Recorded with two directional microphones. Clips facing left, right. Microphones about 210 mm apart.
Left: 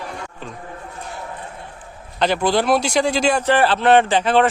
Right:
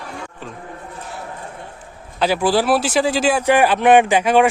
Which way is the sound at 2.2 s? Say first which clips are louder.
Right 1 dB; 5° right (ahead or behind).